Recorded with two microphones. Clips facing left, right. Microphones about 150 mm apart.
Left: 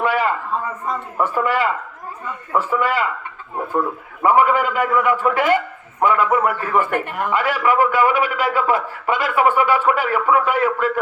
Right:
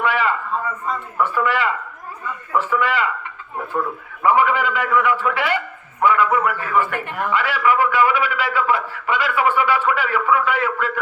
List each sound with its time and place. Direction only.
0.0 s a sound: 45° left (ahead or behind)
1.2 s a man's voice: 45° left (ahead or behind)
4.2 s a man's voice: 45° left (ahead or behind)